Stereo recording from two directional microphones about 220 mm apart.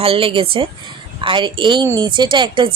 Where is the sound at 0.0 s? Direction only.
25° right (ahead or behind).